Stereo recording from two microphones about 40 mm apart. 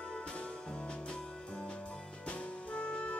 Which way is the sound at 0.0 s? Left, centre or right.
Left.